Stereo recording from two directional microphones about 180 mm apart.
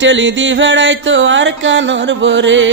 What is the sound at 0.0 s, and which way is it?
Music, 90° right.